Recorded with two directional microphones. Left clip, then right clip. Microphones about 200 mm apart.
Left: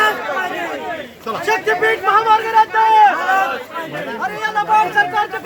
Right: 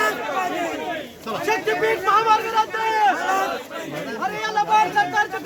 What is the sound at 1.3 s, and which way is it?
Speech, 20° left (ahead or behind).